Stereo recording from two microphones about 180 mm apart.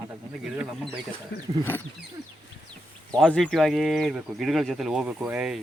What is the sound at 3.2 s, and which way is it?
Speech, centre (ahead or behind).